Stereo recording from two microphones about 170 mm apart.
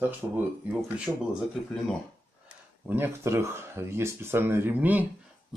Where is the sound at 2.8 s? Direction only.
10° right (ahead or behind).